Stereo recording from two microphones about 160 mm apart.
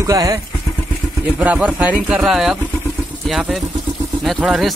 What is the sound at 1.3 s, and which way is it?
Speech, 10° right (ahead or behind).